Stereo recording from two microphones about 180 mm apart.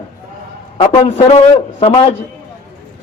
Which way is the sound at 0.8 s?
35° left (ahead or behind).